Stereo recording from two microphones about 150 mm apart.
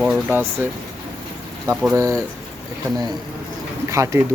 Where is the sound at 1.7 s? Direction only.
5° right (ahead or behind).